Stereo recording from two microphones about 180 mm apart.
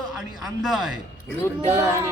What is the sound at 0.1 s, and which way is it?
Speech, 5° right (ahead or behind).